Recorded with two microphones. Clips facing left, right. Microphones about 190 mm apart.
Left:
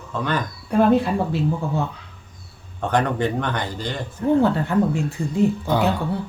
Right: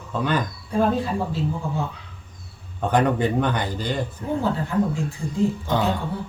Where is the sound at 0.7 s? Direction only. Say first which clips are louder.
Left 5 dB; 65° left (ahead or behind).